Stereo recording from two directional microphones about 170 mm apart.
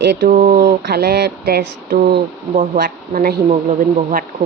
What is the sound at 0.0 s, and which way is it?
Speech, 80° right.